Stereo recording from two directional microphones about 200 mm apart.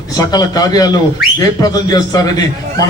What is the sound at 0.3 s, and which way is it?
Speech, 20° left (ahead or behind).